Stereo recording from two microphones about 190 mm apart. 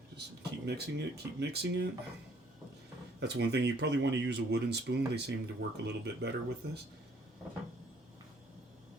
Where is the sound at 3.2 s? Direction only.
60° right (ahead or behind).